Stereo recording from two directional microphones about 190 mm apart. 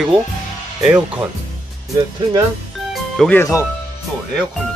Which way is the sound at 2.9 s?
Centre (ahead or behind).